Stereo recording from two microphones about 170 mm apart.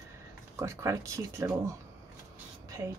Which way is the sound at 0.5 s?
20° right (ahead or behind).